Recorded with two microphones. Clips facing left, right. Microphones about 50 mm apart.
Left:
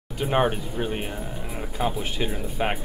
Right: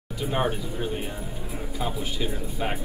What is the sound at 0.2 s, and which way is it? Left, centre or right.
Speech, left.